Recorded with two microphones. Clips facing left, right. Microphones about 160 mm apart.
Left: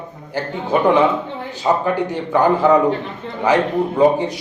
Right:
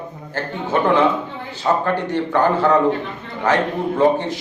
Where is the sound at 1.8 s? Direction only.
15° left (ahead or behind).